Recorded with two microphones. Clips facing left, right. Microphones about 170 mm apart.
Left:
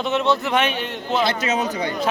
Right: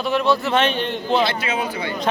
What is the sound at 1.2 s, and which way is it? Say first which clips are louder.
Speech: left 1 dB; 40° left (ahead or behind).